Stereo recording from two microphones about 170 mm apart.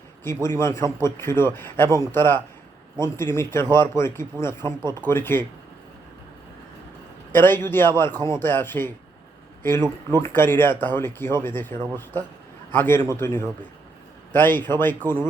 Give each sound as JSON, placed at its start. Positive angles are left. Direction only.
{"t": 0.6, "sound": "speech", "side_deg": 15}
{"t": 4.6, "sound": "speech", "side_deg": -25}
{"t": 5.0, "sound": "speech", "side_deg": 15}
{"t": 7.3, "sound": "speech", "side_deg": 10}
{"t": 9.8, "sound": "speech", "side_deg": -25}
{"t": 10.2, "sound": "speech", "side_deg": 15}